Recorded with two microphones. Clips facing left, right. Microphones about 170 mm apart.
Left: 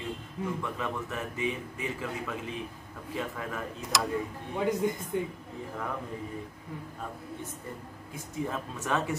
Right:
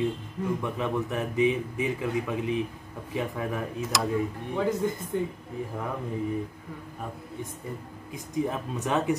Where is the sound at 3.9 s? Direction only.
Centre (ahead or behind).